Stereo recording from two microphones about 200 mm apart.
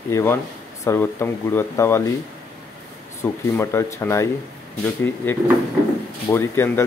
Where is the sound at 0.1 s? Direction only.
10° left (ahead or behind).